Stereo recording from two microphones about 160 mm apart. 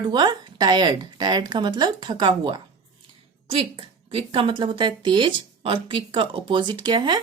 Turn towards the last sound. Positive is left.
turn(degrees=-30)  # may be behind; listen again after turning